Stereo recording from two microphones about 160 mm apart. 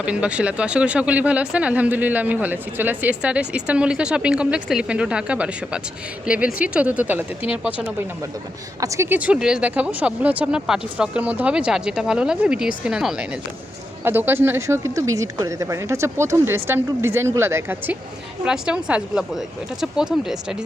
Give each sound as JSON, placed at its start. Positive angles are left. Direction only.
{"t": 0.0, "sound": "speech", "side_deg": -10}
{"t": 8.8, "sound": "a woman's voice", "side_deg": -20}